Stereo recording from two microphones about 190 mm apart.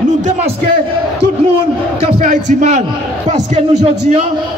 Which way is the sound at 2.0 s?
35° right (ahead or behind).